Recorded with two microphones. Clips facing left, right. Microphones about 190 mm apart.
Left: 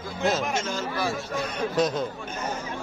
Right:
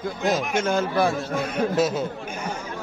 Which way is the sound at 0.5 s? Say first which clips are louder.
Right 7 dB; 55° right (ahead or behind).